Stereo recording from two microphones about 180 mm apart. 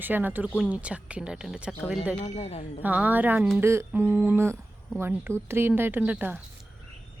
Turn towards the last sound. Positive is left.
turn(degrees=-10)  # may be behind; listen again after turning